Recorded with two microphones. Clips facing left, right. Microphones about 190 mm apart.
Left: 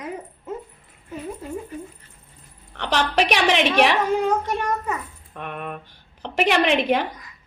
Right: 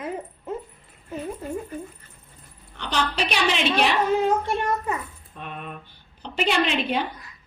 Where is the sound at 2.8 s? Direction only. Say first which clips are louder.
Left 5 dB; 75° left (ahead or behind).